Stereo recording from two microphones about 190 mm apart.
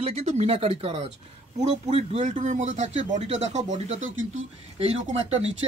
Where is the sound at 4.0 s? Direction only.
90° right.